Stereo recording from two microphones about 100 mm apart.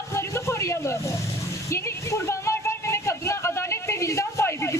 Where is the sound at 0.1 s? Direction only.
30° left (ahead or behind).